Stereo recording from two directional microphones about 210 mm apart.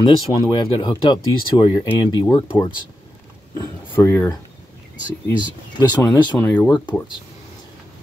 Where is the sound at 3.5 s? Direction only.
15° left (ahead or behind).